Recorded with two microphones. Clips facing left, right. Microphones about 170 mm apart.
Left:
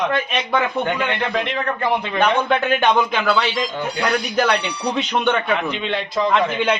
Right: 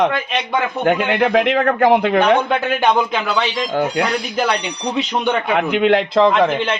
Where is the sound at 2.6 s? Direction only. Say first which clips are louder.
Right 1 dB; centre (ahead or behind).